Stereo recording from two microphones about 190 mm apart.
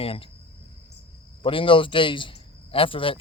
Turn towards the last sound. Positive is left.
turn(degrees=30)  # may be behind; listen again after turning